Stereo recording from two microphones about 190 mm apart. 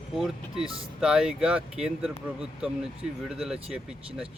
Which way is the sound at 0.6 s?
30° right (ahead or behind).